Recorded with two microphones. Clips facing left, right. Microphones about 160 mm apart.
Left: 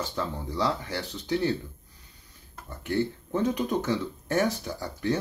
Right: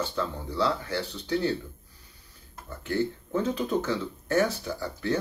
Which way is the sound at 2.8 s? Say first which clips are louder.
Even; 15° left (ahead or behind).